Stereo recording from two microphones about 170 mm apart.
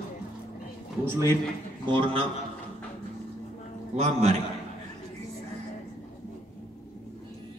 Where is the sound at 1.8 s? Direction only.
30° right (ahead or behind).